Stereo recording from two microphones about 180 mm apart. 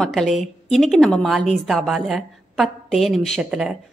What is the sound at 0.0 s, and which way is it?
A woman's voice, centre (ahead or behind).